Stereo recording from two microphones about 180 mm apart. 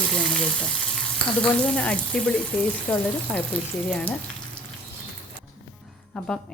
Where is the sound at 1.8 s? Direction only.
5° left (ahead or behind).